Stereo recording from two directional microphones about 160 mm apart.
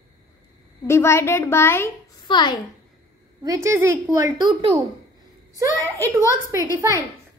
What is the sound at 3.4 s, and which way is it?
A woman's voice, 20° right (ahead or behind).